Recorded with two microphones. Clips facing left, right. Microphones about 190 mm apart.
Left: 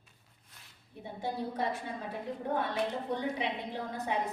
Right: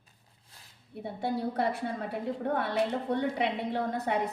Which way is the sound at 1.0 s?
65° right (ahead or behind).